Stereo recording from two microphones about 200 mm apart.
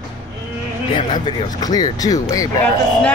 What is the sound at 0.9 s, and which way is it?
Speech, 20° left (ahead or behind).